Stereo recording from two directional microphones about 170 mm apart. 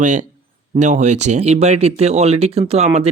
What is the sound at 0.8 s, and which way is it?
Speech, 45° right (ahead or behind).